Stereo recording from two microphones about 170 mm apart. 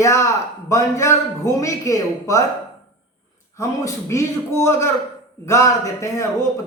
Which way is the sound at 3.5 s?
15° left (ahead or behind).